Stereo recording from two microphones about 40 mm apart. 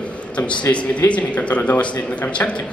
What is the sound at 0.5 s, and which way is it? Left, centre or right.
A woman's voice, left.